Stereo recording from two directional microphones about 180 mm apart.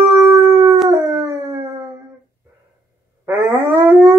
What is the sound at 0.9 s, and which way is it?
Howl, 20° right (ahead or behind).